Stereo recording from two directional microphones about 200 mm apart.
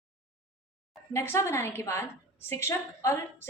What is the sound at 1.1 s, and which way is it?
A woman's voice, 15° left (ahead or behind).